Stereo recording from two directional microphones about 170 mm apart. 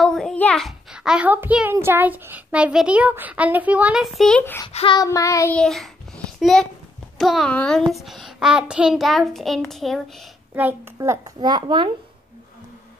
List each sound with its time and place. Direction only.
0.0 s a child's voice: 5° left (ahead or behind)
4.7 s child singing: 25° left (ahead or behind)
5.6 s child singing: 5° left (ahead or behind)
7.2 s a child's voice: centre (ahead or behind)
10.5 s a child's voice: 10° right (ahead or behind)
11.0 s a child's voice: 20° right (ahead or behind)